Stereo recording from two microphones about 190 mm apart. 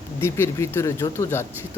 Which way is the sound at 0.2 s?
15° left (ahead or behind).